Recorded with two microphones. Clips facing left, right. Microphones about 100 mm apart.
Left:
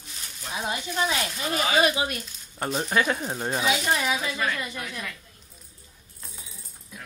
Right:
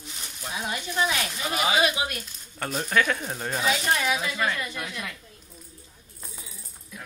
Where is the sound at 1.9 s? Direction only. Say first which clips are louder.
Left 2 dB; 25° left (ahead or behind).